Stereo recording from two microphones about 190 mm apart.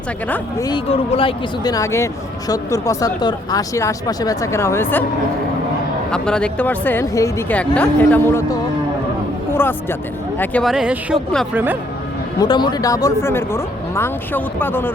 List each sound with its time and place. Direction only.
0.3 s speech: 10° left (ahead or behind)
0.7 s speech: 30° left (ahead or behind); by 5.0 s 10° left (ahead or behind)
6.1 s speech: 5° left (ahead or behind)
12.4 s speech: 20° left (ahead or behind)